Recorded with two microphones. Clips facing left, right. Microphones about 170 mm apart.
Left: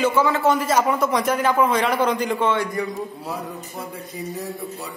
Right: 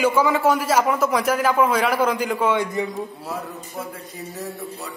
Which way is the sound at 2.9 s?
Centre (ahead or behind).